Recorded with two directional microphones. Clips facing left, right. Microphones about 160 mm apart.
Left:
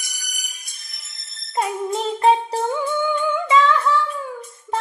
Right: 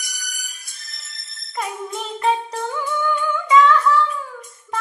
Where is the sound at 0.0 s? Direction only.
20° left (ahead or behind).